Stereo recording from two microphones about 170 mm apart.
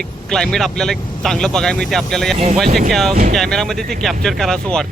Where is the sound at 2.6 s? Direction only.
60° right (ahead or behind).